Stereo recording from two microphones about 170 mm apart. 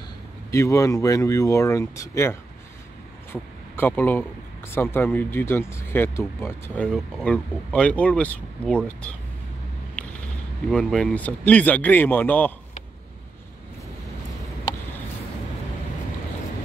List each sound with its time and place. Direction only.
0.5 s speech: 20° left (ahead or behind)
3.7 s speech: 10° left (ahead or behind)
10.0 s a sound: 5° left (ahead or behind)
10.7 s speech: centre (ahead or behind)